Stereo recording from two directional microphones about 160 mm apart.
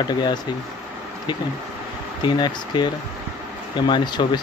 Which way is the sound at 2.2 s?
30° left (ahead or behind).